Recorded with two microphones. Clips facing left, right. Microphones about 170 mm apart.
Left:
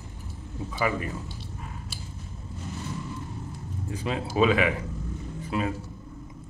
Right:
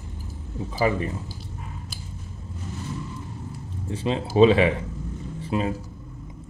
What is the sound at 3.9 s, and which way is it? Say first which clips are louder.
Speech: right 5 dB; 30° right (ahead or behind).